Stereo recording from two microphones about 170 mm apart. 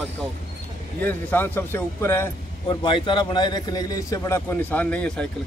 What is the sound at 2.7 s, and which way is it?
A man's voice, 30° left (ahead or behind).